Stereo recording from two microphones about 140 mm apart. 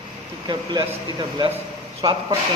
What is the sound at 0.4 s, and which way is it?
Speech, 30° right (ahead or behind).